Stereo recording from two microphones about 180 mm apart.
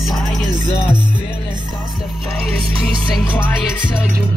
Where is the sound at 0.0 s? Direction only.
Centre (ahead or behind).